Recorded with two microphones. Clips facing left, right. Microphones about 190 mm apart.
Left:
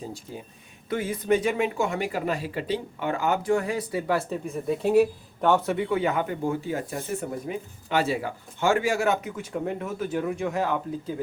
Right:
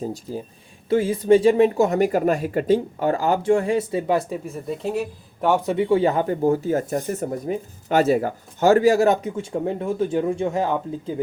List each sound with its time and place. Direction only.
0.0 s speech: 40° right (ahead or behind)
0.9 s speech: 25° right (ahead or behind)
4.4 s speech: centre (ahead or behind)
5.4 s speech: 10° right (ahead or behind); by 10.8 s 30° right (ahead or behind)